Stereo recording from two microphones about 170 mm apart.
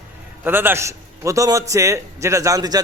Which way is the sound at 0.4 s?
10° right (ahead or behind).